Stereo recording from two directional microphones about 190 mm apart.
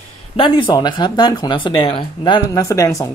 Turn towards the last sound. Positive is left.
turn(degrees=15)  # may be behind; listen again after turning